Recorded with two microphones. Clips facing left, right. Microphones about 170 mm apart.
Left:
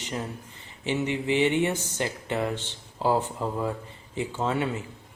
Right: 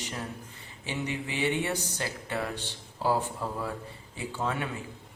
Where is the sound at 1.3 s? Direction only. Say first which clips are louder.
Left 6 dB; 20° left (ahead or behind).